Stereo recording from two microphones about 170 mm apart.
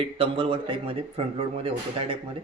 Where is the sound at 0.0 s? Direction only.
30° right (ahead or behind).